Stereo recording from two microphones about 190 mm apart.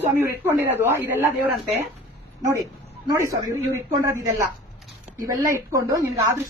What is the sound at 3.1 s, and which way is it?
Speech, 15° right (ahead or behind).